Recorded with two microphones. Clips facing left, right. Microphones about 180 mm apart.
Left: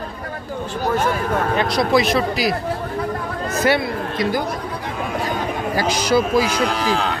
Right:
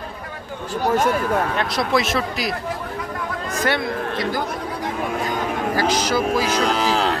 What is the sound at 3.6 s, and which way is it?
Speech, 10° left (ahead or behind).